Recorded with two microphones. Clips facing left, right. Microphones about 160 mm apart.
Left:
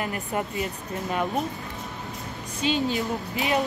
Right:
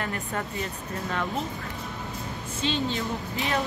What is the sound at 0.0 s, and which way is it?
Speech, 15° left (ahead or behind).